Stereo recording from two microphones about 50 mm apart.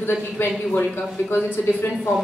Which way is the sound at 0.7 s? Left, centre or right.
Left.